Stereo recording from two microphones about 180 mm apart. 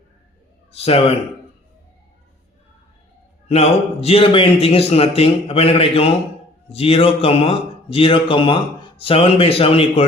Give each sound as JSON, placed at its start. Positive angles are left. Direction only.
{"t": 0.7, "sound": "a man's voice", "side_deg": 35}
{"t": 3.5, "sound": "speech", "side_deg": 35}